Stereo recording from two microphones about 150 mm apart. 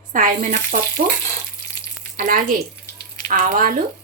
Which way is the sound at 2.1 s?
65° right (ahead or behind).